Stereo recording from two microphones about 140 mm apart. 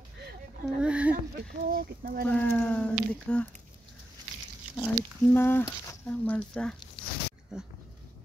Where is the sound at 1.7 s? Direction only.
90° right.